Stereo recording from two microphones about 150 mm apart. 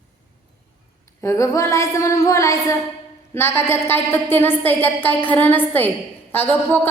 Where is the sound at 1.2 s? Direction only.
20° left (ahead or behind).